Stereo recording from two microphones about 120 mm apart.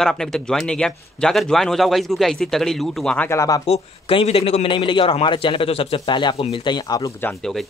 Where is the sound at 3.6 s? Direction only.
55° left (ahead or behind).